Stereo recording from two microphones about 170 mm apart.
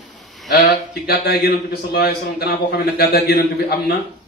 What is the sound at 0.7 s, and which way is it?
A man's voice, 65° left (ahead or behind).